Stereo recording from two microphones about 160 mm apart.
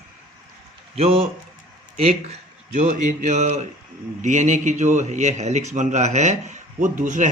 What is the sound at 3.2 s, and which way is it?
A man's voice, 45° right (ahead or behind).